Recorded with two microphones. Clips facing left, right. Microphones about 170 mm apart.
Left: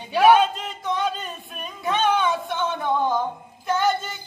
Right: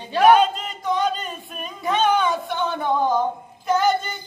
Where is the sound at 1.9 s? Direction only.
Centre (ahead or behind).